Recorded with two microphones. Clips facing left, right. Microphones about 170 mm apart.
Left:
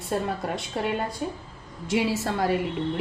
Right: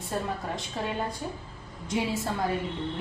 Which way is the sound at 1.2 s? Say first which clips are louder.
Left 4 dB; 70° left (ahead or behind).